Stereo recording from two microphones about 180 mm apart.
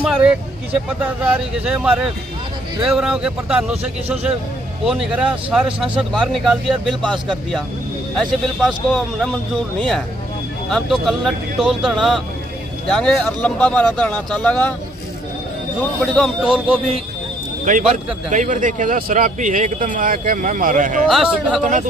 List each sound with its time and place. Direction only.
0.1 s speech: 5° right (ahead or behind)
16.0 s speech: centre (ahead or behind)
17.6 s a man's voice: 45° right (ahead or behind)
21.1 s speech: centre (ahead or behind)